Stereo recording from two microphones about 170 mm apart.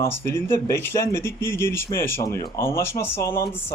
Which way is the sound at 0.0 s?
15° left (ahead or behind).